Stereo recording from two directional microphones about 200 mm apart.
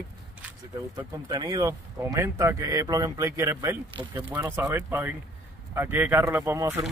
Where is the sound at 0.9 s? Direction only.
20° right (ahead or behind).